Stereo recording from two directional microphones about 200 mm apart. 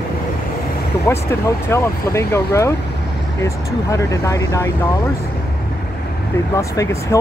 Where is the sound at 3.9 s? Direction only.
15° left (ahead or behind).